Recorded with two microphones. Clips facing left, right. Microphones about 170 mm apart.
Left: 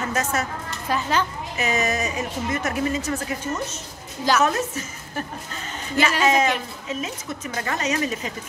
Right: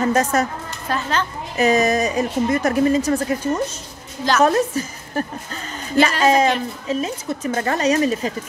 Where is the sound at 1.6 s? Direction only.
35° right (ahead or behind).